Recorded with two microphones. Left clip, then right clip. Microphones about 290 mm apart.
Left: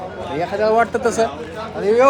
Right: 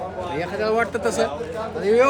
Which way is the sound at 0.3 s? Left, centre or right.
Centre.